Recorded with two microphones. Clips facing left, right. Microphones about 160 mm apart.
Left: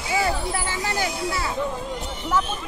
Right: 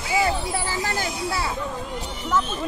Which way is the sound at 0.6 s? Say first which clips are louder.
Even; 30° right (ahead or behind).